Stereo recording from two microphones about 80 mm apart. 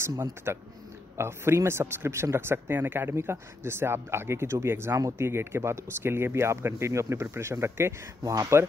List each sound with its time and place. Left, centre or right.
0.5 s speech: right
8.2 s speech: right